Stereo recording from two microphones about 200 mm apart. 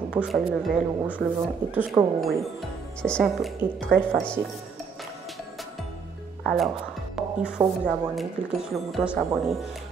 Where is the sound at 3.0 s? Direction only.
Centre (ahead or behind).